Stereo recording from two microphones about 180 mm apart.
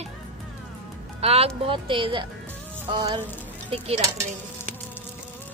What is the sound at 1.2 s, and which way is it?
Speech, 35° right (ahead or behind).